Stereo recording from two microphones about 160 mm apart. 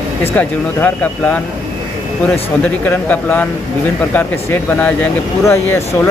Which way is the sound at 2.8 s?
10° left (ahead or behind).